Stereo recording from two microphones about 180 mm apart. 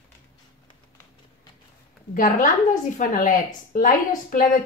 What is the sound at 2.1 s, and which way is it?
A woman's voice, 45° left (ahead or behind).